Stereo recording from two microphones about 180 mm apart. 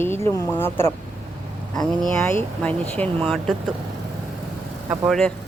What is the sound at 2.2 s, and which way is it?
Speech, 10° left (ahead or behind).